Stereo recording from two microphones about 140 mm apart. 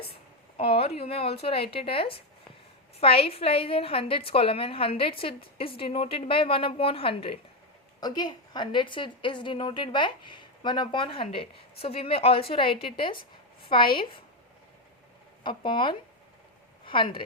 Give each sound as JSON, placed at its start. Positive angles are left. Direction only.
{"t": 0.5, "sound": "a woman's voice", "side_deg": 45}
{"t": 8.0, "sound": "a woman's voice", "side_deg": 30}
{"t": 15.4, "sound": "a woman's voice", "side_deg": 35}